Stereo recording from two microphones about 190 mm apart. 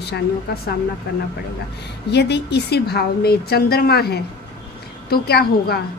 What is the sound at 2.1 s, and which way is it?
Speech, 65° left (ahead or behind).